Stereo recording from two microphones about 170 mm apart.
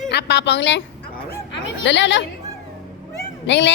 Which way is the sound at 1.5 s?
90° left.